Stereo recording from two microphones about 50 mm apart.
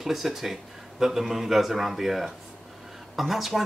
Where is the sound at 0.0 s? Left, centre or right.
Centre.